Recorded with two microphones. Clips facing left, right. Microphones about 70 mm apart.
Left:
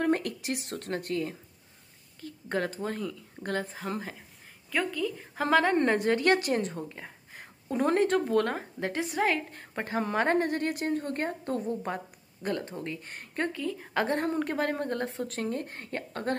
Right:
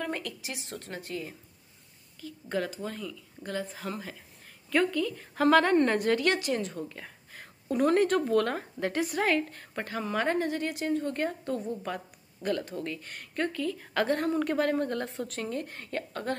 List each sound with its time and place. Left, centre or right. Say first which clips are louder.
0.0 s speech: left 7 dB; left
2.2 s a woman's voice: left 1 dB; left
3.7 s speech: left 2 dB; left
4.6 s a woman's voice: right 3 dB; centre; by 6.7 s left
6.8 s speech: even; centre
10.2 s a woman's voice: left 2 dB; left